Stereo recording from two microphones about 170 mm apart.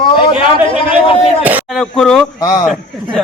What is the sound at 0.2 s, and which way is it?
A man's voice, 30° left (ahead or behind).